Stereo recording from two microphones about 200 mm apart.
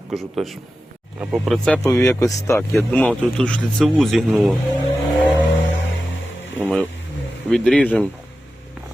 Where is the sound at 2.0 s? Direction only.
15° left (ahead or behind).